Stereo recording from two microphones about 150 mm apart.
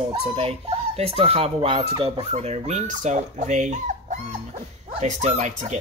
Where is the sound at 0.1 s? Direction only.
40° right (ahead or behind).